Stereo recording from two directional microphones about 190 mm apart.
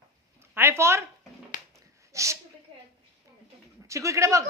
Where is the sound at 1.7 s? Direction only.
15° right (ahead or behind).